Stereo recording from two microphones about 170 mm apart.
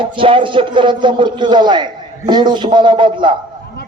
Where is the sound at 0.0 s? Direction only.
30° right (ahead or behind).